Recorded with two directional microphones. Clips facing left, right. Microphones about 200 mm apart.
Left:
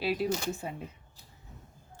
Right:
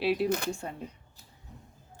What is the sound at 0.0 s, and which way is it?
Speech, centre (ahead or behind).